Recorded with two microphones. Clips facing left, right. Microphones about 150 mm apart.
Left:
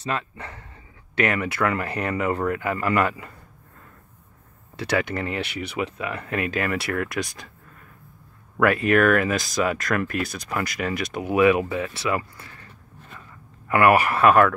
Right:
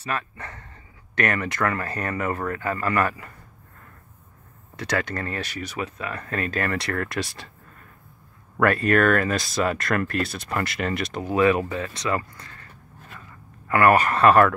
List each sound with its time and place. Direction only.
0.0 s speech: 20° left (ahead or behind)
4.9 s speech: 15° left (ahead or behind)
8.8 s speech: 5° left (ahead or behind)
11.1 s speech: 15° left (ahead or behind)
13.7 s speech: 15° left (ahead or behind)